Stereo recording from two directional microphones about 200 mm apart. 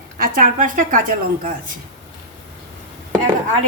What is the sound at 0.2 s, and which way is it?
A woman's voice, 40° right (ahead or behind).